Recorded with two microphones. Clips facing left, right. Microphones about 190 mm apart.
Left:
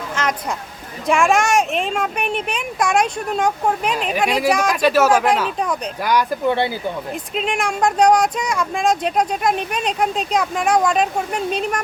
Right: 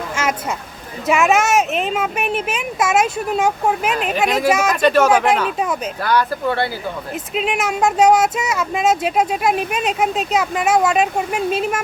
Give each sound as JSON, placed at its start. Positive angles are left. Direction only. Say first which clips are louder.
{"t": 0.2, "sound": "a sound", "louder": "right 1 dB", "side_deg": -10}
{"t": 1.0, "sound": "speech", "louder": "right 1 dB", "side_deg": -5}
{"t": 4.8, "sound": "speech", "louder": "right 1 dB", "side_deg": 5}
{"t": 5.4, "sound": "speech", "louder": "right 1 dB", "side_deg": -5}
{"t": 6.0, "sound": "speech", "louder": "even", "side_deg": 15}
{"t": 7.3, "sound": "speech", "louder": "right 2 dB", "side_deg": -5}